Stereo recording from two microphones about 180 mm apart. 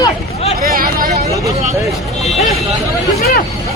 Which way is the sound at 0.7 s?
50° right (ahead or behind).